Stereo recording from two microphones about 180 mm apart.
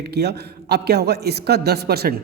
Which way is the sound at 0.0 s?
65° right (ahead or behind).